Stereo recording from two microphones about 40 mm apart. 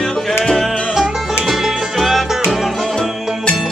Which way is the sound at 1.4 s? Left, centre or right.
Centre.